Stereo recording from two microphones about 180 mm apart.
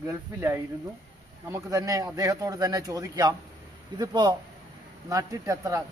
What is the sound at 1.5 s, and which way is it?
Speech, 20° right (ahead or behind).